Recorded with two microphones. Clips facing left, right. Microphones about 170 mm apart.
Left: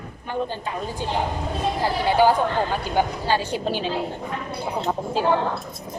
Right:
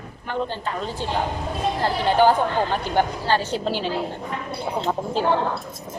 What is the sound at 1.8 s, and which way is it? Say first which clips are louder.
A woman's voice: right 1 dB; 10° left (ahead or behind).